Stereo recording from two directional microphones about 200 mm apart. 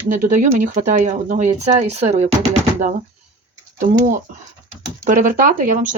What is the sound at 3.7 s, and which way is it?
Speech, 40° right (ahead or behind).